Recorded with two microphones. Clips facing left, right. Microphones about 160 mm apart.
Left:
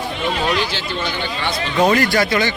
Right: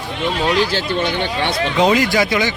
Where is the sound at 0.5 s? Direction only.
40° right (ahead or behind); by 1.7 s 65° right (ahead or behind).